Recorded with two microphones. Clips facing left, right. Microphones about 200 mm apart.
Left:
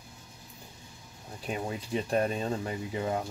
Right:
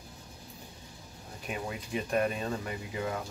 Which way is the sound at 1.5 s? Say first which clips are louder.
Left 3 dB; 30° left (ahead or behind).